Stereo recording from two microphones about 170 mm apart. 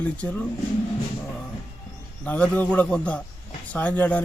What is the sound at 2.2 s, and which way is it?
Speech, 10° left (ahead or behind).